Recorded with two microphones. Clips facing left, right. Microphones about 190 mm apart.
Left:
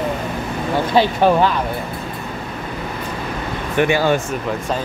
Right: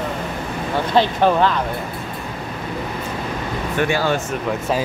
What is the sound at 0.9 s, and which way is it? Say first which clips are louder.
Speech: left 1 dB; 10° left (ahead or behind).